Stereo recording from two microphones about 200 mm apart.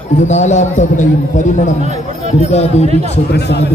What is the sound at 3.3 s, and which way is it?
Speech, 55° left (ahead or behind).